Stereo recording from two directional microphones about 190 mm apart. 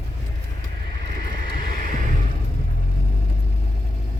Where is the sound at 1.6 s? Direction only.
45° right (ahead or behind).